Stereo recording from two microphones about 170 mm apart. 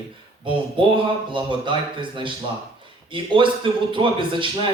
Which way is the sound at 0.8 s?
30° right (ahead or behind).